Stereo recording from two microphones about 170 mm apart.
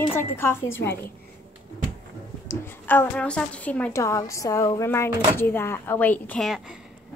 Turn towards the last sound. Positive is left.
turn(degrees=0)  # may be behind; listen again after turning